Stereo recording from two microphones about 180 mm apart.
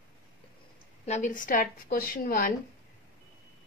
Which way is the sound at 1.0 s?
40° left (ahead or behind).